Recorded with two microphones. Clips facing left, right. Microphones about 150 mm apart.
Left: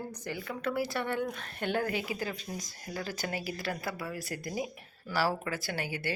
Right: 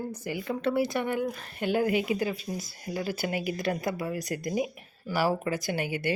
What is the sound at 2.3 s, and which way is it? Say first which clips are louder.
Speech: right 5 dB; 5° right (ahead or behind).